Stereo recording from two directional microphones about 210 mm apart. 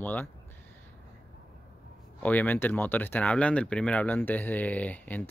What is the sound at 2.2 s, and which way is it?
Speech, 10° left (ahead or behind).